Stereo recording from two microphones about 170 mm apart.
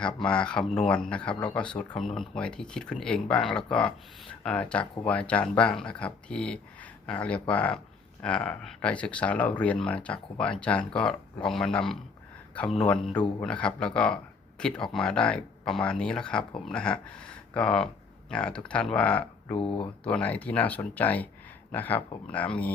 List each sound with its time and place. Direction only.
0.0 s speech: 5° left (ahead or behind)
19.5 s speech: 30° left (ahead or behind)
20.1 s speech: 10° left (ahead or behind)